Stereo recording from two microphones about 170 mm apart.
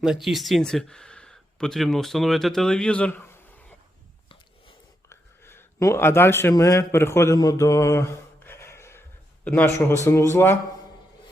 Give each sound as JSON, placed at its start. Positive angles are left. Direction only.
{"t": 0.0, "sound": "speech", "side_deg": 0}
{"t": 5.0, "sound": "a sound", "side_deg": 15}
{"t": 10.1, "sound": "speech", "side_deg": 15}